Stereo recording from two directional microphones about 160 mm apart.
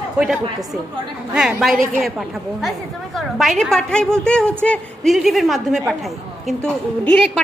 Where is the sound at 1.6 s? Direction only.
Centre (ahead or behind).